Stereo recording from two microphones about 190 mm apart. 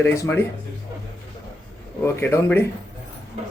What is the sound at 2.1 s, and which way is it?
Speech, 10° left (ahead or behind).